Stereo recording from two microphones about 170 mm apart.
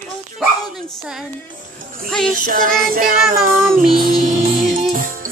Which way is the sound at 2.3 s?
55° right (ahead or behind).